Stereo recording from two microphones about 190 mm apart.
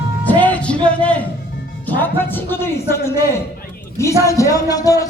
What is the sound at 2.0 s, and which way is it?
Speech, 10° left (ahead or behind).